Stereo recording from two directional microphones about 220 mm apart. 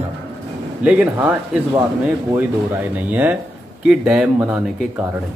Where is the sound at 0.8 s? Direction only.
5° right (ahead or behind).